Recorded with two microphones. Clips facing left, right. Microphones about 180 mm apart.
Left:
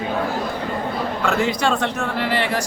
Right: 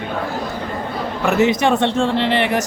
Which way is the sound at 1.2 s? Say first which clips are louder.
Right 6 dB; 20° right (ahead or behind).